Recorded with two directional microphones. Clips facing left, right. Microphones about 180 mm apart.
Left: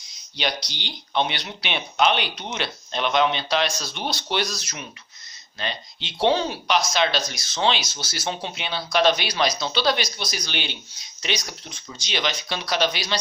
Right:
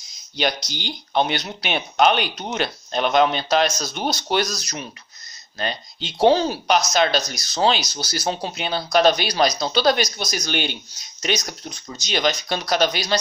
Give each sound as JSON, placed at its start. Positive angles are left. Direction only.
{"t": 0.4, "sound": "speech", "side_deg": -45}